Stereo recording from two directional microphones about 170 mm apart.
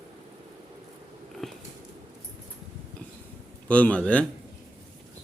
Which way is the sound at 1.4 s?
Centre (ahead or behind).